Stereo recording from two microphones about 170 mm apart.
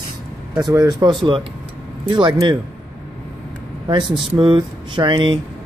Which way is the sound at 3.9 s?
30° right (ahead or behind).